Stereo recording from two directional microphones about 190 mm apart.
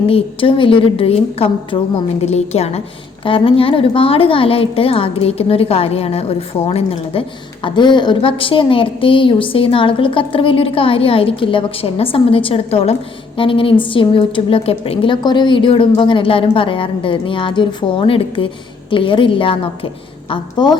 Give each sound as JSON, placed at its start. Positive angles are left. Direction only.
{"t": 0.1, "sound": "a woman's voice", "side_deg": 25}